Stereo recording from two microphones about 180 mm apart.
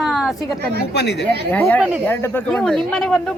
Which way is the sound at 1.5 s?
10° left (ahead or behind).